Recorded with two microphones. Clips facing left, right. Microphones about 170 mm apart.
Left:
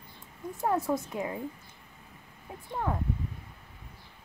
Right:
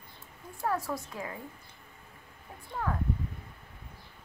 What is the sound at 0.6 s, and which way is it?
Speech, 20° left (ahead or behind).